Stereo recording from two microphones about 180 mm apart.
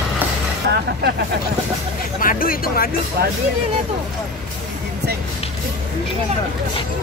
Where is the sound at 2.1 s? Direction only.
50° left (ahead or behind).